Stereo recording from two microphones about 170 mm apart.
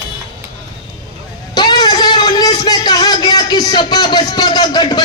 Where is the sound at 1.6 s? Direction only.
25° left (ahead or behind).